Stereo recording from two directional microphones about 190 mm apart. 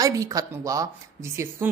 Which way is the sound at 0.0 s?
20° right (ahead or behind).